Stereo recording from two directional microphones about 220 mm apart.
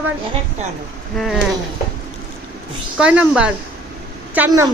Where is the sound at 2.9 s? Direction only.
5° right (ahead or behind).